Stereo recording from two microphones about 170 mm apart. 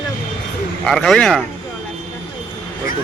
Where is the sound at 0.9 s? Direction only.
5° left (ahead or behind).